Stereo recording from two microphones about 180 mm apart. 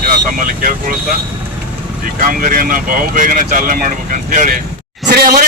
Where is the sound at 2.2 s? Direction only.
50° right (ahead or behind).